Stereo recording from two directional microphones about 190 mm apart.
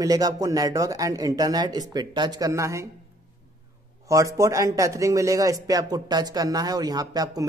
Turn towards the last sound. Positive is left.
turn(degrees=-20)  # may be behind; listen again after turning